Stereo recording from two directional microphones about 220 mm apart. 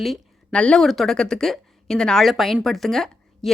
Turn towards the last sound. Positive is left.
turn(degrees=0)  # may be behind; listen again after turning